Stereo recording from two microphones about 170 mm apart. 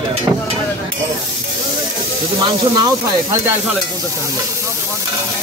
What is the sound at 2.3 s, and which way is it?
Speech, 25° right (ahead or behind).